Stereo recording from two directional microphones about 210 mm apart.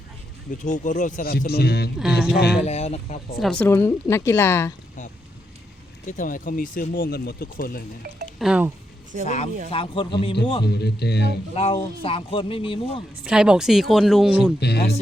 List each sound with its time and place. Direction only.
0.6 s speech: 35° left (ahead or behind)
2.6 s speech: 30° left (ahead or behind)
3.3 s speech: centre (ahead or behind)
6.1 s speech: 40° left (ahead or behind)
8.4 s speech: 5° right (ahead or behind)
9.2 s speech: 30° left (ahead or behind)
10.7 s speech: 50° left (ahead or behind)
11.5 s speech: 25° left (ahead or behind)
13.2 s speech: 5° right (ahead or behind)
14.6 s speech: 50° left (ahead or behind)